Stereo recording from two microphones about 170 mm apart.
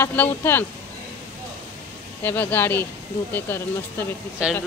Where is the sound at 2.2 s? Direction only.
10° left (ahead or behind).